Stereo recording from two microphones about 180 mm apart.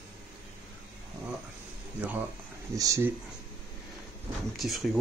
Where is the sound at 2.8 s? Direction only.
15° right (ahead or behind).